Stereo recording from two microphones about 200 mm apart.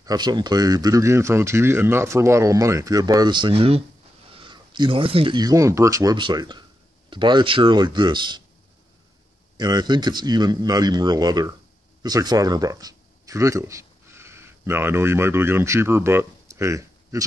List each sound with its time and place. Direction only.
0.0 s a man's voice: 20° right (ahead or behind)
9.6 s a man's voice: 20° right (ahead or behind)